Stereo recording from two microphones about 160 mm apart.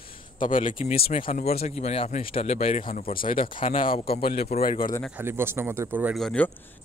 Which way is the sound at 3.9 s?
70° left (ahead or behind).